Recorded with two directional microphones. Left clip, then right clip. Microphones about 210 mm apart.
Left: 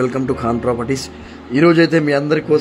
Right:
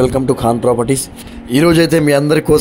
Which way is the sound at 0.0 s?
15° right (ahead or behind).